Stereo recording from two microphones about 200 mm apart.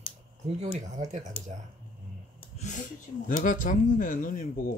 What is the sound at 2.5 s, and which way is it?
Speech, 35° left (ahead or behind).